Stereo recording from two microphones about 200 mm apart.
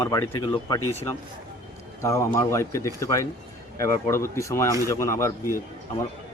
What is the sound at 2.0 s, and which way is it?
Speech, 15° left (ahead or behind).